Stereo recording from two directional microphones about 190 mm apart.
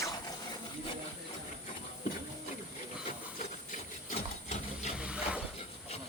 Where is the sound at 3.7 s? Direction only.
40° left (ahead or behind).